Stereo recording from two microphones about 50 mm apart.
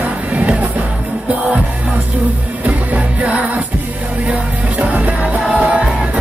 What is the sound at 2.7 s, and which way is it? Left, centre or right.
Music, right.